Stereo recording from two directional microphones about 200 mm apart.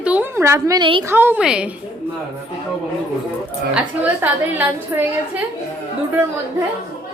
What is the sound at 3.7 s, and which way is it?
A woman's voice, 10° right (ahead or behind).